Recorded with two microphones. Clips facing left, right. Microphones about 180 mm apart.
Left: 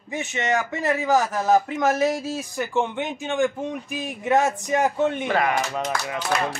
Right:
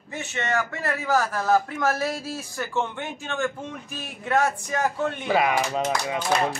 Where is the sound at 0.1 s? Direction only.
15° left (ahead or behind).